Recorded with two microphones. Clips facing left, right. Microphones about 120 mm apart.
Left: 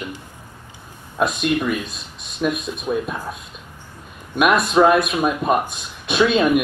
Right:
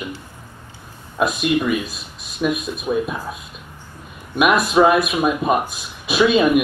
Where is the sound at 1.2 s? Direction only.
5° right (ahead or behind).